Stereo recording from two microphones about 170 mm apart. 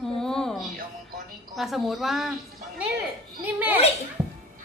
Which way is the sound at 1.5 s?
Centre (ahead or behind).